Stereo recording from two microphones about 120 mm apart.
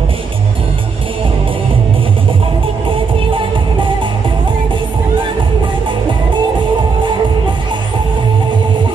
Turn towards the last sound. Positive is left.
turn(degrees=-40)  # may be behind; listen again after turning